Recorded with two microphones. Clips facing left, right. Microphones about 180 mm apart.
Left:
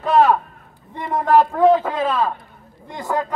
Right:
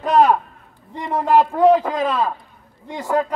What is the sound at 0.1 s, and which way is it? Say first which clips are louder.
A man's voice: even; 15° right (ahead or behind).